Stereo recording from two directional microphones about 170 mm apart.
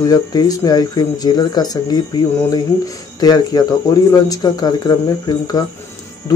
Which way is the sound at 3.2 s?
25° left (ahead or behind).